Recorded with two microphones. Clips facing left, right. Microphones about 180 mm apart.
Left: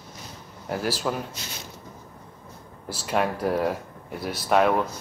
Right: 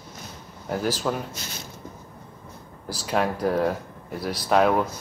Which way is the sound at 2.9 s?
Centre (ahead or behind).